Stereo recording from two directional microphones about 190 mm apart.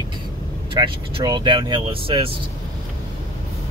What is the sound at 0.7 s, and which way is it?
Speech, 25° right (ahead or behind).